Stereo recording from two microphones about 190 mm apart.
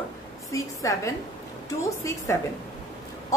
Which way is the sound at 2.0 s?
15° left (ahead or behind).